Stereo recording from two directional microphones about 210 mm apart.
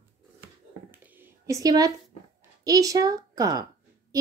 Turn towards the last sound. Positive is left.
turn(degrees=-15)  # may be behind; listen again after turning